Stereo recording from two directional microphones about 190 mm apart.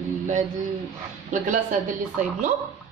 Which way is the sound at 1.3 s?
40° right (ahead or behind).